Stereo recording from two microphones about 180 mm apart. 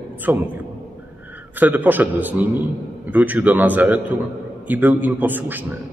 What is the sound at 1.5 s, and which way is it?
A man's voice, 10° right (ahead or behind).